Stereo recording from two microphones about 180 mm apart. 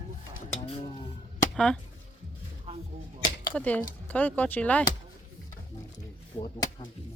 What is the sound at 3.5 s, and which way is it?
Speech, 10° left (ahead or behind).